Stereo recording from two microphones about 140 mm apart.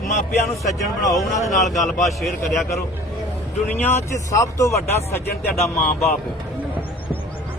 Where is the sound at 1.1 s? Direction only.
Centre (ahead or behind).